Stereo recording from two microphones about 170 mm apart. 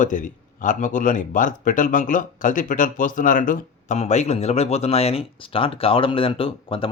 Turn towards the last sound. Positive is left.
turn(degrees=30)  # may be behind; listen again after turning